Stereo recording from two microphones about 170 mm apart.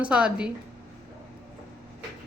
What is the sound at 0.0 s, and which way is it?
Speech, 5° right (ahead or behind).